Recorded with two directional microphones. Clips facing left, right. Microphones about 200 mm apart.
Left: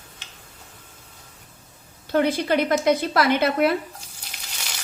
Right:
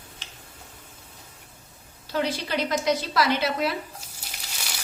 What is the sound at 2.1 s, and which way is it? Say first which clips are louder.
Speech: left 7 dB; 55° left (ahead or behind).